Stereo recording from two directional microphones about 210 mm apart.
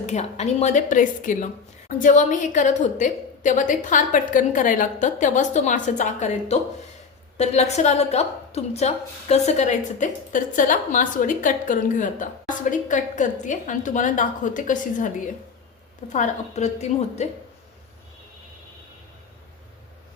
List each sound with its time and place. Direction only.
0.0 s a woman's voice: 30° left (ahead or behind)
16.1 s a woman's voice: 35° left (ahead or behind)